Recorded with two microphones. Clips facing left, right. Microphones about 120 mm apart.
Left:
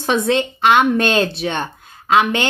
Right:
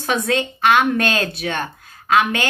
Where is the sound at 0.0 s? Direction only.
25° left (ahead or behind).